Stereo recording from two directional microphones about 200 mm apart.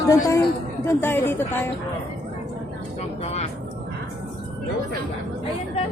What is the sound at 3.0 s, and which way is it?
Vehicle, 30° left (ahead or behind).